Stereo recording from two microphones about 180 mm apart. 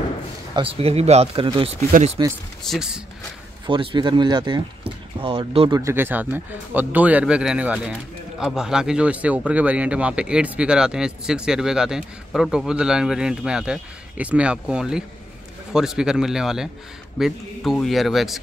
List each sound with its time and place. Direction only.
0.6 s speech: 30° right (ahead or behind)
1.9 s speech: 45° right (ahead or behind)
2.6 s speech: 5° left (ahead or behind)
3.6 s speech: 25° right (ahead or behind)
5.8 s speech: 15° right (ahead or behind)